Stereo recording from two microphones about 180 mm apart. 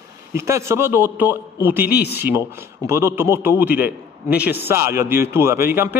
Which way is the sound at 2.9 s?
15° right (ahead or behind).